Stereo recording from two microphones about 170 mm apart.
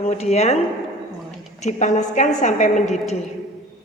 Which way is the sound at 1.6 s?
45° left (ahead or behind).